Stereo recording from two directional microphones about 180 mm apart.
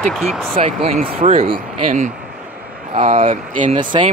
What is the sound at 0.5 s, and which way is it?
Speech, 35° right (ahead or behind).